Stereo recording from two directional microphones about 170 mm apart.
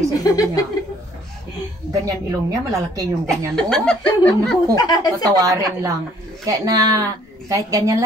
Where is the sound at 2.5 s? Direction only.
20° right (ahead or behind).